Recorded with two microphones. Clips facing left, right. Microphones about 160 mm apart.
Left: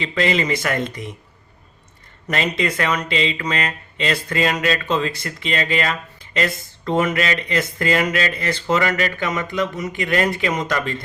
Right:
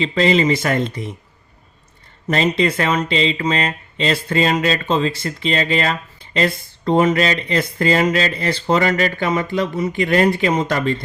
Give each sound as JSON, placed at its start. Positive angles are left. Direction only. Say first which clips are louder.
{"t": 0.0, "sound": "speech", "louder": "right 5 dB", "side_deg": -30}
{"t": 2.2, "sound": "speech", "louder": "right 5 dB", "side_deg": -30}